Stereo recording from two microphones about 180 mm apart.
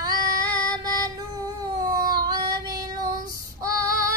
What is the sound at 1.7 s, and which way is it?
Child singing, 20° right (ahead or behind).